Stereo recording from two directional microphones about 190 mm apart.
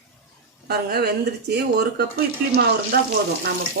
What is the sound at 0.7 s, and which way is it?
Speech, 55° right (ahead or behind).